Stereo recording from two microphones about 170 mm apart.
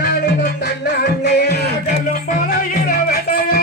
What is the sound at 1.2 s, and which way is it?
Music, 75° left (ahead or behind).